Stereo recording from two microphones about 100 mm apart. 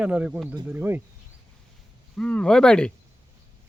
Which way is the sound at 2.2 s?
10° left (ahead or behind).